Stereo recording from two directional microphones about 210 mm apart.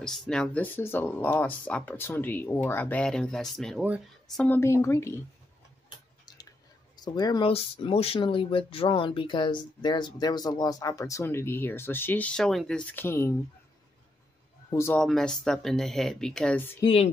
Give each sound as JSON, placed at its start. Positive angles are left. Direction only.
{"t": 0.0, "sound": "speech", "side_deg": 0}
{"t": 4.5, "sound": "speech", "side_deg": 10}
{"t": 7.0, "sound": "speech", "side_deg": 20}
{"t": 14.7, "sound": "speech", "side_deg": 10}
{"t": 16.8, "sound": "speech", "side_deg": 25}